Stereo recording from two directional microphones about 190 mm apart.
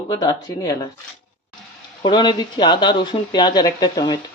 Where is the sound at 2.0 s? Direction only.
25° left (ahead or behind).